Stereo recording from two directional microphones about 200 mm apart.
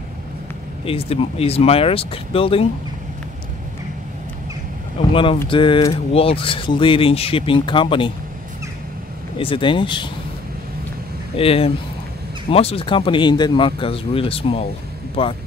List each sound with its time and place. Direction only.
0.8 s speech: 30° left (ahead or behind)
5.1 s speech: 25° left (ahead or behind)
9.4 s speech: 25° left (ahead or behind)
11.3 s speech: 30° left (ahead or behind)